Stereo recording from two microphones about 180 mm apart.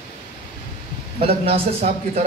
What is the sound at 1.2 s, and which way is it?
Speech, 35° right (ahead or behind).